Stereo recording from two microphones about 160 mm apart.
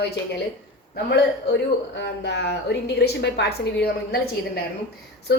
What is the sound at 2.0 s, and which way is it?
A woman's voice, 90° left.